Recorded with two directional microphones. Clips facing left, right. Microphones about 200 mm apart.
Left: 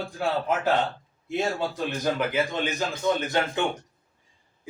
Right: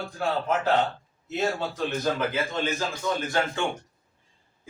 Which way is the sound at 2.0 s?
15° left (ahead or behind).